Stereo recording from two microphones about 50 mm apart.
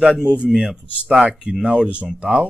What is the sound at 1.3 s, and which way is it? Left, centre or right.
Speech, right.